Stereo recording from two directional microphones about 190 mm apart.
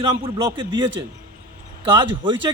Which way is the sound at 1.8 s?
25° right (ahead or behind).